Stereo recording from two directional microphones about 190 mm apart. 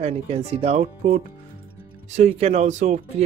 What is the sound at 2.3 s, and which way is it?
Speech, 35° right (ahead or behind).